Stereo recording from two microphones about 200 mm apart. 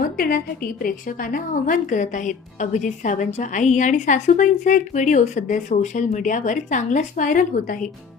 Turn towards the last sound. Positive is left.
turn(degrees=40)  # may be behind; listen again after turning